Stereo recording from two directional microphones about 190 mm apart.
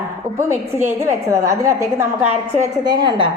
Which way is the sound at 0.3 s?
15° right (ahead or behind).